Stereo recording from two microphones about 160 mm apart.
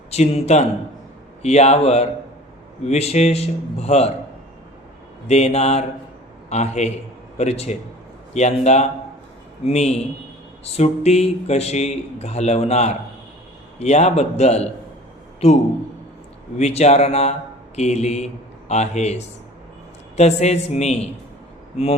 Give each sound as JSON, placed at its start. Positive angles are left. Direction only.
{"t": 0.1, "sound": "a man's voice", "side_deg": 45}
{"t": 5.3, "sound": "a man's voice", "side_deg": 45}